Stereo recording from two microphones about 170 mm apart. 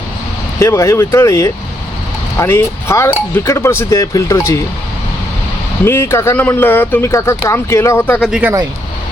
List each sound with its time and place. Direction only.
0.6 s speech: 15° left (ahead or behind)
5.8 s speech: 15° left (ahead or behind)
8.2 s speech: 5° right (ahead or behind)